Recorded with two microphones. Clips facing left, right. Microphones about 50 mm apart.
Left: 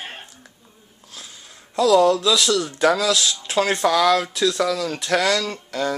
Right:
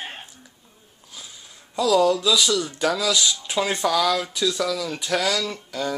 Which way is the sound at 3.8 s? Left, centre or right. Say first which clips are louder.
Left 4 dB; left.